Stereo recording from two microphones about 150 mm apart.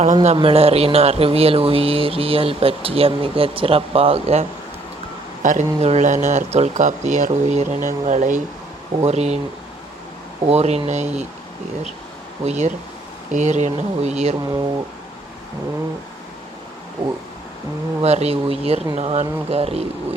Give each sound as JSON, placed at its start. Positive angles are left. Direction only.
{"t": 0.0, "sound": "speech", "side_deg": -45}
{"t": 5.4, "sound": "speech", "side_deg": -55}
{"t": 10.4, "sound": "speech", "side_deg": -45}
{"t": 12.5, "sound": "speech", "side_deg": -50}
{"t": 14.3, "sound": "speech", "side_deg": -25}
{"t": 18.0, "sound": "speech", "side_deg": -45}